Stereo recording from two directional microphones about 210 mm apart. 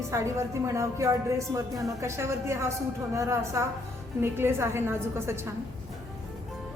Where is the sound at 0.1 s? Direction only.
15° right (ahead or behind).